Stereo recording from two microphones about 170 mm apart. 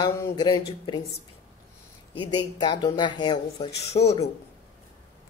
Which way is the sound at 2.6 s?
25° left (ahead or behind).